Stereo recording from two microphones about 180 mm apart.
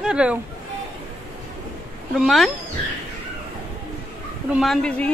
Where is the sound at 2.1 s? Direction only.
Centre (ahead or behind).